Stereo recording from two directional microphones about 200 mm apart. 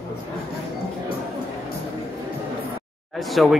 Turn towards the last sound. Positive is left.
turn(degrees=0)  # may be behind; listen again after turning